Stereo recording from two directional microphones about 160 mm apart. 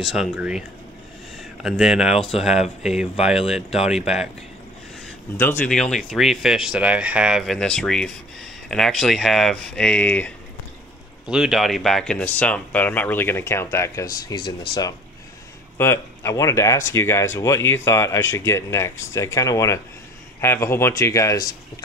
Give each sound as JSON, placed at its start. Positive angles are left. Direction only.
{"t": 0.0, "sound": "speech", "side_deg": 0}
{"t": 5.4, "sound": "speech", "side_deg": 10}
{"t": 11.2, "sound": "speech", "side_deg": -5}
{"t": 14.3, "sound": "speech", "side_deg": 30}
{"t": 15.8, "sound": "speech", "side_deg": 15}